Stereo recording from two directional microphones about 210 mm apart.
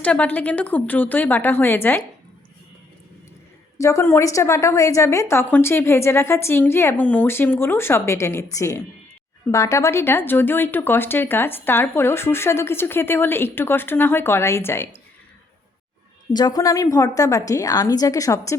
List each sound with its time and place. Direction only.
0.0 s speech: 5° left (ahead or behind)
3.8 s speech: 15° left (ahead or behind)
16.3 s speech: 20° left (ahead or behind)